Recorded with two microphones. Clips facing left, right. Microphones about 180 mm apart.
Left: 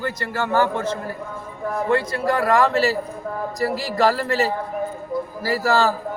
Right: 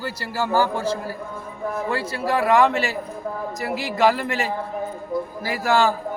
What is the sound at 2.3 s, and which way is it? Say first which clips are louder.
Speech: right 1 dB; centre (ahead or behind).